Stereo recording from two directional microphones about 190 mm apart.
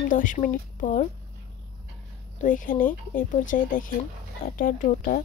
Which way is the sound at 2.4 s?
45° left (ahead or behind).